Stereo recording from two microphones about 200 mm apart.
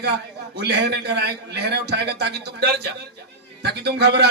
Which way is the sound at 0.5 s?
55° right (ahead or behind).